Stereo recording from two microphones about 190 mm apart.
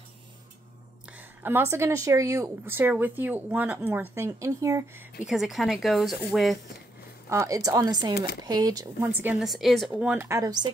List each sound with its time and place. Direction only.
1.1 s a woman's voice: 10° right (ahead or behind)
5.2 s speech: centre (ahead or behind)
7.2 s a woman's voice: 15° right (ahead or behind)